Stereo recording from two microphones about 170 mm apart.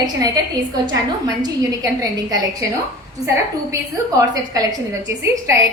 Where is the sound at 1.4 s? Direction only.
20° right (ahead or behind).